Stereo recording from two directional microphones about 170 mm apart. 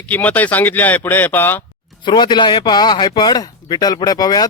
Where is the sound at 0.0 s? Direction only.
10° left (ahead or behind).